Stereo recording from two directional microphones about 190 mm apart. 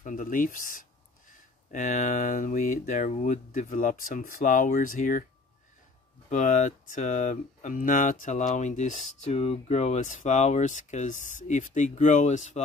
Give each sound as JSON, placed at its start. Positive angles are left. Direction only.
{"t": 0.0, "sound": "speech", "side_deg": 45}
{"t": 6.2, "sound": "speech", "side_deg": 40}